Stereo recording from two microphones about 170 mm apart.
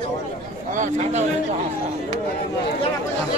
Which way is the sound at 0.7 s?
45° right (ahead or behind).